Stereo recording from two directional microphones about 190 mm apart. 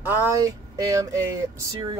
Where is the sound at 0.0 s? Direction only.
10° right (ahead or behind).